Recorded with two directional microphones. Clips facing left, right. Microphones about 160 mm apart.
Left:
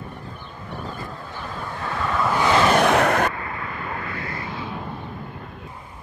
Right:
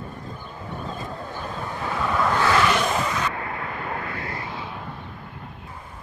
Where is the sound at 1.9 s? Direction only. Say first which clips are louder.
Even; 5° right (ahead or behind).